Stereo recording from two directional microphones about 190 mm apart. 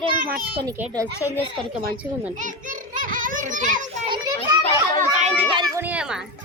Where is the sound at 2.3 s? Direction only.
40° right (ahead or behind).